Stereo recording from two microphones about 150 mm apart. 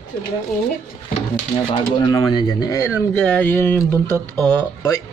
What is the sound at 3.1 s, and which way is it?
Speech, 10° left (ahead or behind).